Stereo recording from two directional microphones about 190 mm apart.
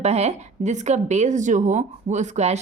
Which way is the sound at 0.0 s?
35° right (ahead or behind).